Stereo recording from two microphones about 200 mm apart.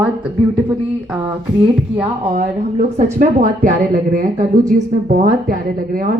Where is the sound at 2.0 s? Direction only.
35° right (ahead or behind).